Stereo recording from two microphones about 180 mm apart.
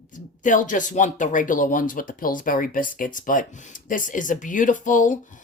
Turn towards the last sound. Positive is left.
turn(degrees=45)  # may be behind; listen again after turning